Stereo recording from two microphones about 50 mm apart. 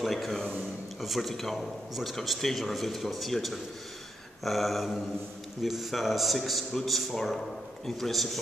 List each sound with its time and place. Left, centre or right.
0.0 s a man's voice: centre